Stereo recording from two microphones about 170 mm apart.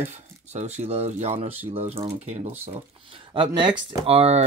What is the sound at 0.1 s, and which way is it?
Speech, 40° right (ahead or behind).